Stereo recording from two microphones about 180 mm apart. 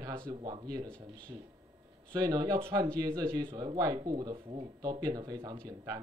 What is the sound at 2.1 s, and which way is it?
Speech, 20° right (ahead or behind).